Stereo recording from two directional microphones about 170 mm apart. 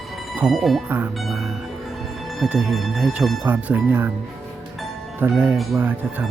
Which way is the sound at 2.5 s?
Centre (ahead or behind).